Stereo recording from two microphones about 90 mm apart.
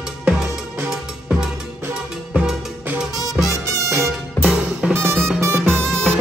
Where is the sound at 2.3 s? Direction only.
10° right (ahead or behind).